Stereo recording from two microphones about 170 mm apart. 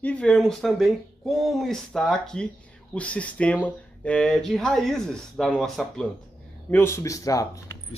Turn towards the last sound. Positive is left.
turn(degrees=20)  # may be behind; listen again after turning